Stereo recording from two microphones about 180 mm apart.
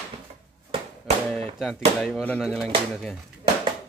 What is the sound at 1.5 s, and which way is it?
Speech, centre (ahead or behind).